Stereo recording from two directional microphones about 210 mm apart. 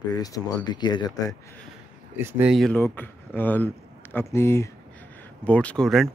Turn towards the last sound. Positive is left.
turn(degrees=0)  # may be behind; listen again after turning